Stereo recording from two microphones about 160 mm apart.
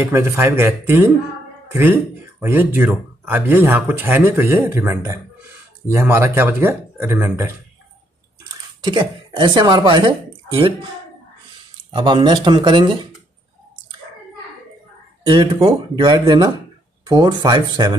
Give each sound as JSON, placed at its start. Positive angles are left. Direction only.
{"t": 0.0, "sound": "speech", "side_deg": -15}
{"t": 8.8, "sound": "speech", "side_deg": -30}
{"t": 11.9, "sound": "speech", "side_deg": -30}
{"t": 15.2, "sound": "speech", "side_deg": -35}